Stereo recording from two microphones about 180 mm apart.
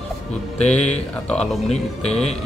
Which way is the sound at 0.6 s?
40° left (ahead or behind).